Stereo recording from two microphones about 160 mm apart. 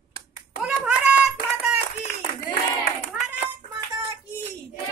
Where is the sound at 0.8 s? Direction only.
5° right (ahead or behind).